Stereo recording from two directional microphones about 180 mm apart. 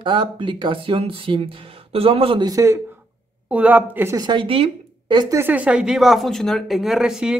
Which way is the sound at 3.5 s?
10° right (ahead or behind).